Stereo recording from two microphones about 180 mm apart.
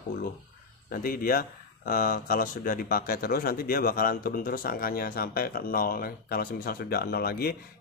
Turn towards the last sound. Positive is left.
turn(degrees=60)  # may be behind; listen again after turning